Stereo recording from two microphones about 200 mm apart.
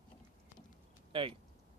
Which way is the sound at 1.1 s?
25° right (ahead or behind).